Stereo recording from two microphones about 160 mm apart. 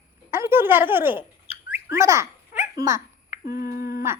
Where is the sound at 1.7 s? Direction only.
15° right (ahead or behind).